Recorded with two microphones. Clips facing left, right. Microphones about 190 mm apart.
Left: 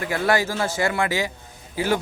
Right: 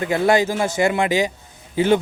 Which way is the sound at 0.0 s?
20° right (ahead or behind).